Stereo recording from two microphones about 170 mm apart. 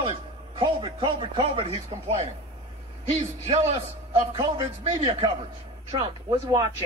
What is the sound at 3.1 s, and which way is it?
A man's voice, 40° right (ahead or behind).